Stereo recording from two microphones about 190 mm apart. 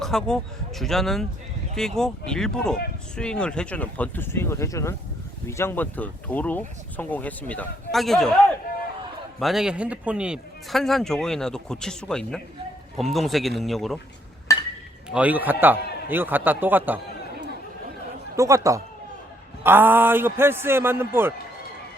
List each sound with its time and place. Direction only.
0.0 s a man's voice: 5° left (ahead or behind)
9.4 s a man's voice: centre (ahead or behind)
14.5 s chink: 15° left (ahead or behind)
15.1 s a man's voice: 10° right (ahead or behind)
18.3 s a man's voice: 15° right (ahead or behind)